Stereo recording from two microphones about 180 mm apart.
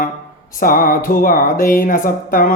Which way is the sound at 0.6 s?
50° left (ahead or behind).